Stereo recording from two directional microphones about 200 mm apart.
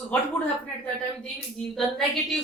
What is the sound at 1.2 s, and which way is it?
Speech, centre (ahead or behind).